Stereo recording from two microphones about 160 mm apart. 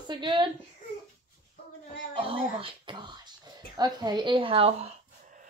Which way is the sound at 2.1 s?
35° right (ahead or behind).